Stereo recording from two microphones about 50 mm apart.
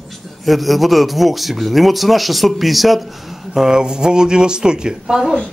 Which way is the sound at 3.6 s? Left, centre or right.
Centre.